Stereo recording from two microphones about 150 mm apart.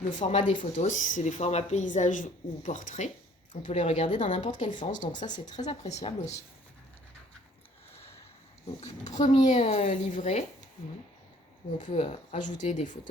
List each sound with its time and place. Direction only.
0.1 s speech: 50° left (ahead or behind)
3.8 s speech: 40° left (ahead or behind)
4.8 s speech: 55° left (ahead or behind)
9.4 s speech: 50° left (ahead or behind)
11.9 s speech: 40° left (ahead or behind)